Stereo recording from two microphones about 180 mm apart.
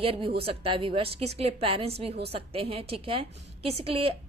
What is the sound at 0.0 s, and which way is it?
A woman's voice, 30° right (ahead or behind).